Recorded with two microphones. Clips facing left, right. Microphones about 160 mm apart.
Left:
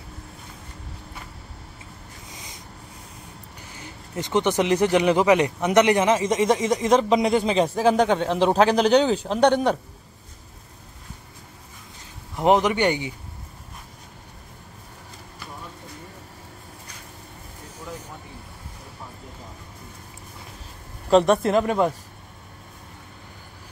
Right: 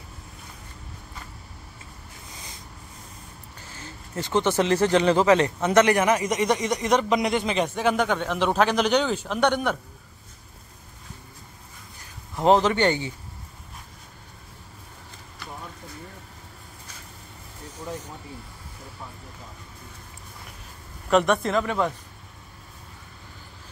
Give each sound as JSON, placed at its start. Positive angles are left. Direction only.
{"t": 3.7, "sound": "speech", "side_deg": 15}
{"t": 12.4, "sound": "a man's voice", "side_deg": 15}
{"t": 21.1, "sound": "speech", "side_deg": 30}